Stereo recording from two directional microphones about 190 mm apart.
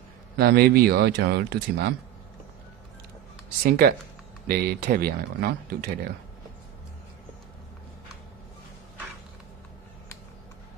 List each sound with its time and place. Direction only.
0.4 s speech: 55° right (ahead or behind)
3.6 s speech: 50° right (ahead or behind)